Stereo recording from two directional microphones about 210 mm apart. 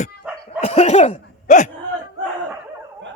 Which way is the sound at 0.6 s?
30° left (ahead or behind).